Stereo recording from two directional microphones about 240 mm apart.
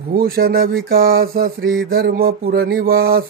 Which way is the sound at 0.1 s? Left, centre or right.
Right.